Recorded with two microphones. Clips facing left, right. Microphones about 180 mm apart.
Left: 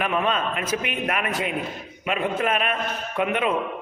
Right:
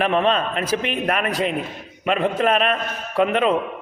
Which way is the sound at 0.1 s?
30° right (ahead or behind).